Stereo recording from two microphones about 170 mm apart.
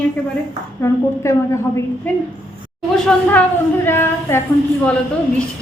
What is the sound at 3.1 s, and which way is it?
A woman's voice, 5° left (ahead or behind).